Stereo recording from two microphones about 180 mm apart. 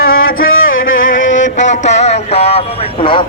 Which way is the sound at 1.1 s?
90° left.